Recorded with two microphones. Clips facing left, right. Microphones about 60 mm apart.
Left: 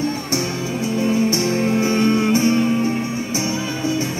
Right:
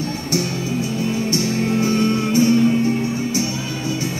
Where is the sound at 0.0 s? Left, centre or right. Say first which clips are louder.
Left 1 dB; left.